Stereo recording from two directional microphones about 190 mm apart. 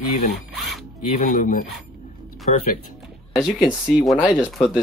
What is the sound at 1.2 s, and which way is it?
Speech, 45° left (ahead or behind).